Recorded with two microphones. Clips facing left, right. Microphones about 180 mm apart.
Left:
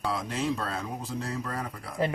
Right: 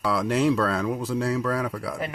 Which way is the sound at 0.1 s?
75° right (ahead or behind).